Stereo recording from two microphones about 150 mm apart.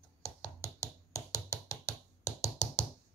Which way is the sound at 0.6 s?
20° left (ahead or behind).